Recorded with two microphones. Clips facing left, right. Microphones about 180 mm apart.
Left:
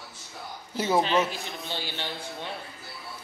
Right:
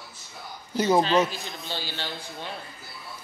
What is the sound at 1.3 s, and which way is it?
A man's voice, 20° left (ahead or behind).